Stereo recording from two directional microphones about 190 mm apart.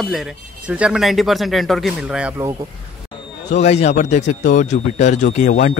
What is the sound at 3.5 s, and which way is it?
Speech, 35° left (ahead or behind).